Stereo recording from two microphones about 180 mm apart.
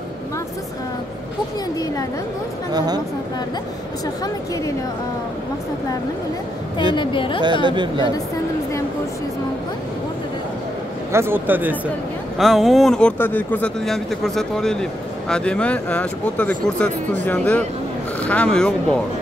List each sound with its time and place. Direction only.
2.7 s speech: 20° right (ahead or behind)
7.0 s a woman's voice: 25° left (ahead or behind)
7.6 s speech: 25° right (ahead or behind)
11.1 s a man's voice: 15° right (ahead or behind); by 18.9 s 5° left (ahead or behind)